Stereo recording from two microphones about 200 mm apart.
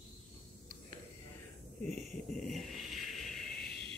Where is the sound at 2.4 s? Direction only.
Centre (ahead or behind).